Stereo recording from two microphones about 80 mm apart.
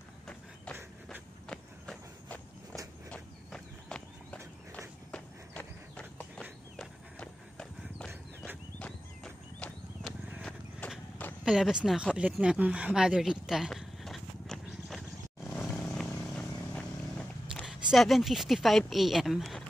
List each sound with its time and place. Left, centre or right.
3.1 s horse: centre
10.8 s horse: centre
11.4 s a sound: centre
15.7 s vehicle: centre
17.6 s speech: centre